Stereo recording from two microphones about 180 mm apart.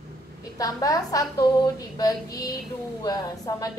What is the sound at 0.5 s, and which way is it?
A woman's voice, 20° left (ahead or behind).